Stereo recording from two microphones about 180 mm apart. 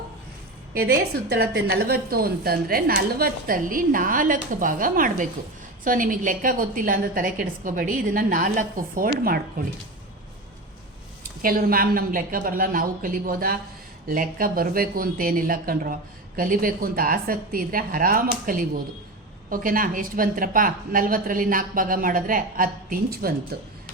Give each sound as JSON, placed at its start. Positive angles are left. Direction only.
{"t": 0.7, "sound": "a woman's voice", "side_deg": -60}
{"t": 11.4, "sound": "speech", "side_deg": -55}